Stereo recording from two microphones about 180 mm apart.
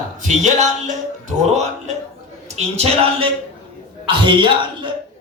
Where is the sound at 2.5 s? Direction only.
35° right (ahead or behind).